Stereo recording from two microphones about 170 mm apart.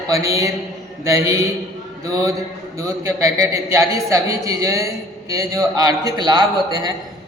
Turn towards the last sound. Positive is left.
turn(degrees=-25)  # may be behind; listen again after turning